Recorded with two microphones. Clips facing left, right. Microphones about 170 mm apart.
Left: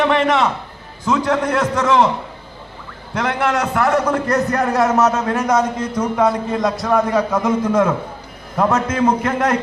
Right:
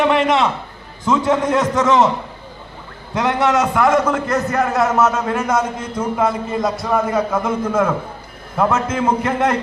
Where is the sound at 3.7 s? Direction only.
Centre (ahead or behind).